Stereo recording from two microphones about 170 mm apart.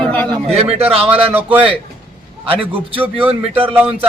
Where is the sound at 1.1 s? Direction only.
10° right (ahead or behind).